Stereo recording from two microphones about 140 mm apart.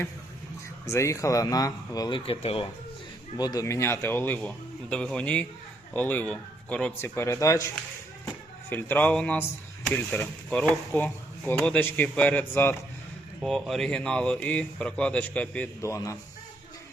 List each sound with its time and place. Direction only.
0.9 s speech: 20° left (ahead or behind); by 2.6 s 45° left (ahead or behind)
3.3 s speech: 30° left (ahead or behind)
8.7 s speech: 10° left (ahead or behind)
13.4 s speech: centre (ahead or behind)
15.8 s speech: 20° left (ahead or behind)